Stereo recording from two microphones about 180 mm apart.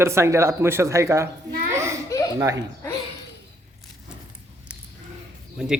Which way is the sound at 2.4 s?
15° right (ahead or behind).